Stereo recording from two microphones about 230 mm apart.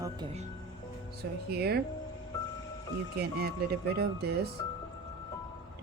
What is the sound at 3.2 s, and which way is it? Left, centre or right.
Speech, right.